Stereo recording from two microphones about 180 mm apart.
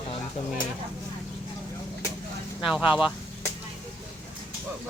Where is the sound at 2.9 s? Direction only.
5° right (ahead or behind).